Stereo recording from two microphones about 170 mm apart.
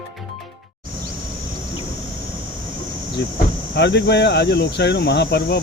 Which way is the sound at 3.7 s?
90° left.